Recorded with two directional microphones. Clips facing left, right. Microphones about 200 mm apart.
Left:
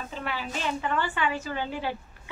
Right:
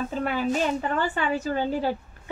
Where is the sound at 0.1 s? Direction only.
45° right (ahead or behind).